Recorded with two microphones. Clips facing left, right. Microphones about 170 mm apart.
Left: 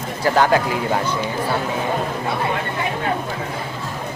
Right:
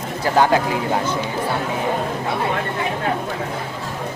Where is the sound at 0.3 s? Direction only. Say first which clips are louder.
Even; 20° right (ahead or behind).